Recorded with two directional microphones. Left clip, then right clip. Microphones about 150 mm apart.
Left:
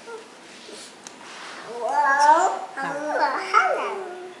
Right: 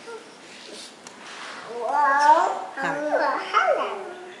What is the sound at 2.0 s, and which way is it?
A child's voice, 15° left (ahead or behind).